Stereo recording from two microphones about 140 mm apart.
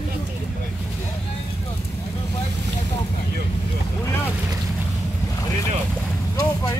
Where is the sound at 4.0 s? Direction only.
20° left (ahead or behind).